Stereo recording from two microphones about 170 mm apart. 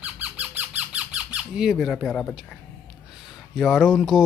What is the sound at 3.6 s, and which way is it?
Speech, 5° left (ahead or behind).